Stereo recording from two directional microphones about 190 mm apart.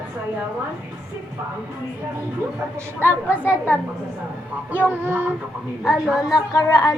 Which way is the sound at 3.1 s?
10° right (ahead or behind).